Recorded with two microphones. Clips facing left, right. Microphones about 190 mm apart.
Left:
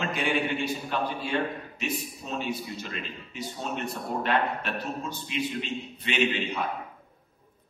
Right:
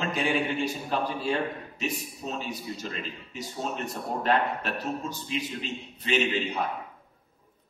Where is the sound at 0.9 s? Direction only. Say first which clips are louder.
Right 2 dB; 35° right (ahead or behind).